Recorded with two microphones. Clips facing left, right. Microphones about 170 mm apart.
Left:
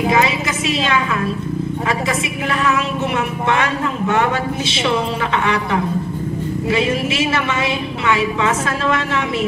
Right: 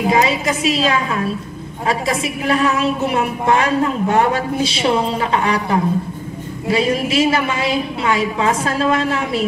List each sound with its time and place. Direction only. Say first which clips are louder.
0.1 s a woman's voice: right 1 dB; 35° right (ahead or behind)